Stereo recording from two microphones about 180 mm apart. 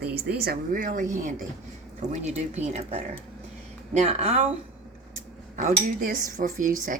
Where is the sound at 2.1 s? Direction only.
40° right (ahead or behind).